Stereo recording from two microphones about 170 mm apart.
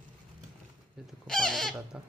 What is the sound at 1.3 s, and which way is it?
Bird, centre (ahead or behind).